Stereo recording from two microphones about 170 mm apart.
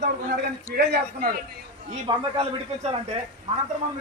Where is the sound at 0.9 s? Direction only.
65° right (ahead or behind).